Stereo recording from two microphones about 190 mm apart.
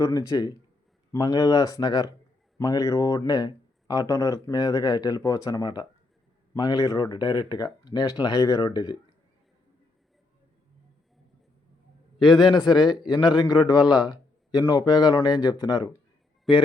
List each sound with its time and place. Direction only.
0.0 s speech: 15° left (ahead or behind)
12.4 s speech: 25° left (ahead or behind)
16.5 s a man's voice: centre (ahead or behind)